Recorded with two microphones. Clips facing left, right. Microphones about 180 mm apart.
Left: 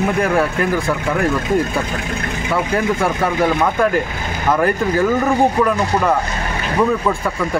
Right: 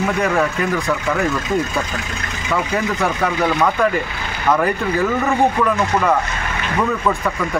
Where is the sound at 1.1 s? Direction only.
55° left (ahead or behind).